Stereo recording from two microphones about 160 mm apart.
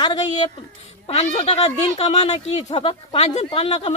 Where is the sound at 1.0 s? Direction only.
40° left (ahead or behind).